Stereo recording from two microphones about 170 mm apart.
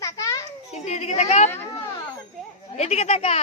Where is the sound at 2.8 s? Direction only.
40° left (ahead or behind).